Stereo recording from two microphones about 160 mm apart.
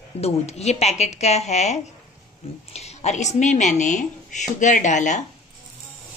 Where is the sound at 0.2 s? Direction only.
40° left (ahead or behind).